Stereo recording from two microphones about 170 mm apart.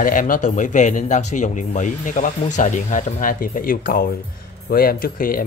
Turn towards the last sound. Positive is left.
turn(degrees=55)  # may be behind; listen again after turning